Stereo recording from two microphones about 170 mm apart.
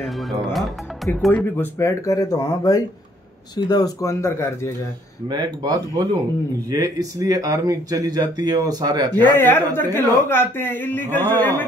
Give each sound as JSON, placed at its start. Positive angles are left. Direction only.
{"t": 0.0, "sound": "speech", "side_deg": 0}
{"t": 5.3, "sound": "speech", "side_deg": -25}
{"t": 9.1, "sound": "speech", "side_deg": 15}